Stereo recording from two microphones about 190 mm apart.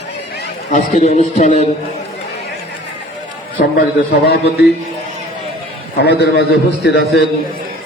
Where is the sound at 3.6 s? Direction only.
50° left (ahead or behind).